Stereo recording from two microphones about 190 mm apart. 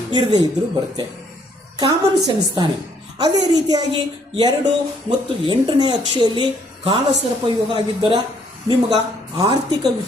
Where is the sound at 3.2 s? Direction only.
20° right (ahead or behind).